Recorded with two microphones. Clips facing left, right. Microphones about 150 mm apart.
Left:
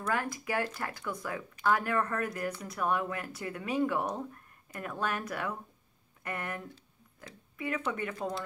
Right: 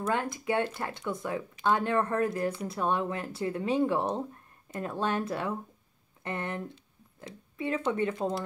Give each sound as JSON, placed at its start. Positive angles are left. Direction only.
{"t": 0.0, "sound": "speech", "side_deg": -25}